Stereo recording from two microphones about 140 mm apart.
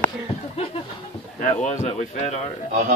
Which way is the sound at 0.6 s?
45° left (ahead or behind).